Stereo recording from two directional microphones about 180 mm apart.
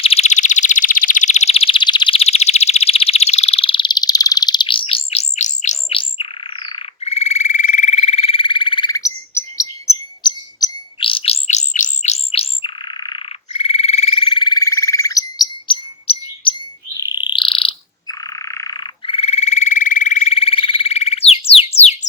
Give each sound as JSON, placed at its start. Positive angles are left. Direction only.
{"t": 0.0, "sound": "alarm", "side_deg": 35}
{"t": 10.2, "sound": "bird", "side_deg": 25}